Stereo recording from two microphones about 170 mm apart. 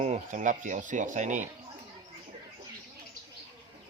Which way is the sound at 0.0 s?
45° right (ahead or behind).